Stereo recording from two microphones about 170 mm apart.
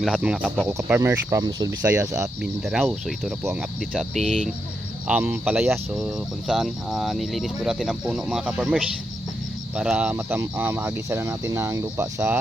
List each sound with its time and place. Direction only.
0.0 s speech: centre (ahead or behind)
0.7 s speech: 15° right (ahead or behind)
2.2 s speech: centre (ahead or behind)
5.0 s speech: 10° right (ahead or behind)
5.9 s speech: centre (ahead or behind); by 12.4 s 15° right (ahead or behind)